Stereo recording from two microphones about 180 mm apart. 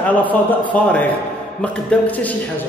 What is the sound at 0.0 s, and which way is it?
A man's voice, 10° left (ahead or behind).